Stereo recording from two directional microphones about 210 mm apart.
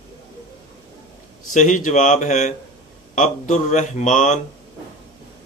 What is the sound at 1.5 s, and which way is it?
Speech, 40° left (ahead or behind).